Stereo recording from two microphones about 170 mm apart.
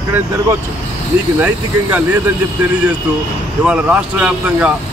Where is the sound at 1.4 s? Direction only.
10° right (ahead or behind).